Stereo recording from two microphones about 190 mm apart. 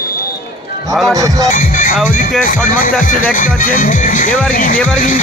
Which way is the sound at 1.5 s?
45° left (ahead or behind).